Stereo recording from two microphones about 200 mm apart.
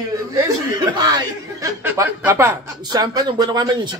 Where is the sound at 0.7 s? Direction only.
20° right (ahead or behind).